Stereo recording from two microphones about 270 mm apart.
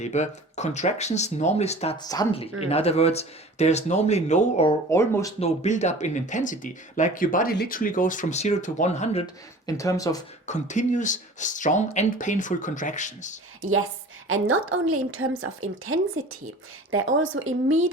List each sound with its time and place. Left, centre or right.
0.0 s speech: left
4.9 s speech: centre
5.4 s speech: left
10.4 s speech: left
13.6 s a woman's voice: right